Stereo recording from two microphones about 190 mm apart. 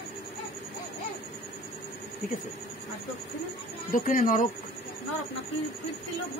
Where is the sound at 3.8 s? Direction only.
45° left (ahead or behind).